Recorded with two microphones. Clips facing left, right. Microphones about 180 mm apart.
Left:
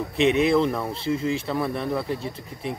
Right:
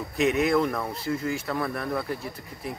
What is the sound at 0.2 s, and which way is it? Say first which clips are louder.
Speech: left 3 dB; 30° left (ahead or behind).